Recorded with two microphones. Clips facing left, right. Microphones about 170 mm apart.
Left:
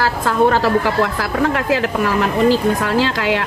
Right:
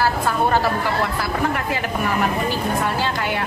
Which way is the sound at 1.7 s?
90° left.